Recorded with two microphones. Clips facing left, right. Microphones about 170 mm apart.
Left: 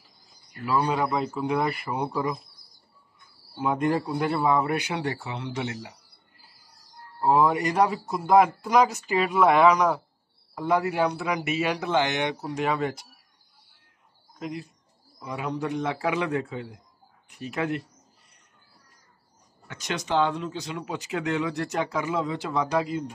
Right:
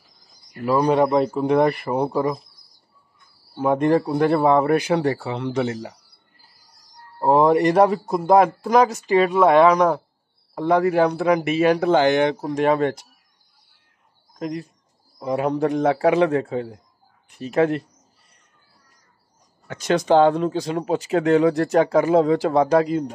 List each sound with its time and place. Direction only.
0.7 s a man's voice: 45° right (ahead or behind)
1.9 s speech: 35° right (ahead or behind)
3.5 s a man's voice: 40° right (ahead or behind)
7.2 s a man's voice: 45° right (ahead or behind)
11.1 s a man's voice: 55° right (ahead or behind)
11.6 s a man's voice: 40° right (ahead or behind)
14.4 s a man's voice: 45° right (ahead or behind)
19.7 s a man's voice: 45° right (ahead or behind)